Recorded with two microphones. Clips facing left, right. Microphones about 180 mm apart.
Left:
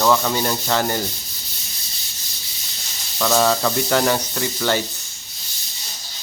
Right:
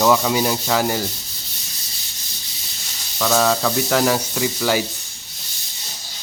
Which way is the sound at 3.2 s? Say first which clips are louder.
Even; centre (ahead or behind).